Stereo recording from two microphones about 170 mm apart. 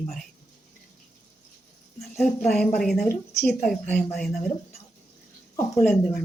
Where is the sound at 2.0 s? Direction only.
Centre (ahead or behind).